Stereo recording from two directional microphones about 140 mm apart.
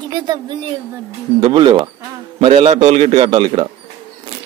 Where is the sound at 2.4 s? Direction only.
55° right (ahead or behind).